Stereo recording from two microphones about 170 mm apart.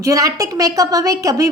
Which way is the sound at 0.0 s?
20° right (ahead or behind).